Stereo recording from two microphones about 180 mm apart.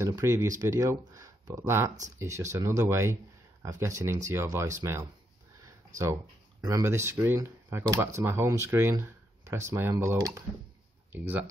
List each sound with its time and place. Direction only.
0.0 s speech: 15° right (ahead or behind)
6.6 s speech: 15° right (ahead or behind)